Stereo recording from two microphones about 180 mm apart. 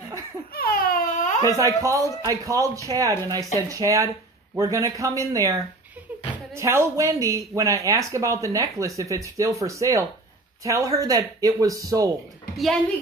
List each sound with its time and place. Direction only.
0.5 s a sound: 55° left (ahead or behind)
1.4 s speech: 20° right (ahead or behind)
12.5 s a woman's voice: centre (ahead or behind)